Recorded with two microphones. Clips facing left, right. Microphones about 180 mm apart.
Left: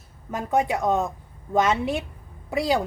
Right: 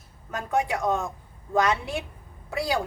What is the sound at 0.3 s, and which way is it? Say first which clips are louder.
A woman's voice: left 3 dB; 20° left (ahead or behind).